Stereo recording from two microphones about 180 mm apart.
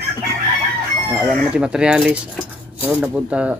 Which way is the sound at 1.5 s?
5° right (ahead or behind).